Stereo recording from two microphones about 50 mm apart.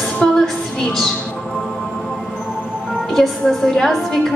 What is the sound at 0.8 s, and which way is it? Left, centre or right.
Speech, centre.